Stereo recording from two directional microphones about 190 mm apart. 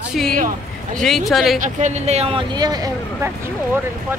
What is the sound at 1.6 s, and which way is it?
Speech, 40° right (ahead or behind).